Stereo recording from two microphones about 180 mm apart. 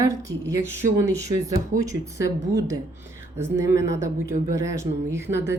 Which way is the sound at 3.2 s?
15° right (ahead or behind).